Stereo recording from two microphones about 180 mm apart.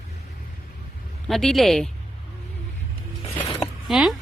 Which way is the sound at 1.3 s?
Centre (ahead or behind).